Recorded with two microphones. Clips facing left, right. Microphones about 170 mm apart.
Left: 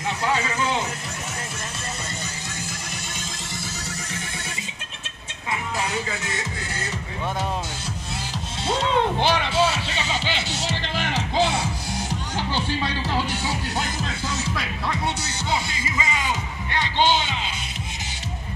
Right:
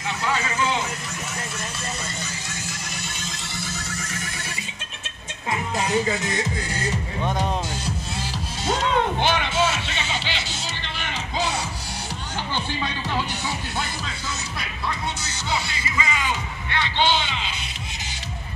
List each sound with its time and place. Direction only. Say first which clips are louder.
8.6 s music: even; 30° left (ahead or behind)
10.5 s music: left 6 dB; 85° left
11.3 s music: left 4 dB; 25° left (ahead or behind)
15.5 s music: even; 40° left (ahead or behind)